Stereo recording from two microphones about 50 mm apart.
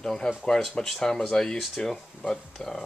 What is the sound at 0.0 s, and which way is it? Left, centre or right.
Speech, centre.